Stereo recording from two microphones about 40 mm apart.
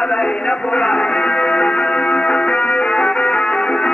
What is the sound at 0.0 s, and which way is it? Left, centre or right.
Music, left.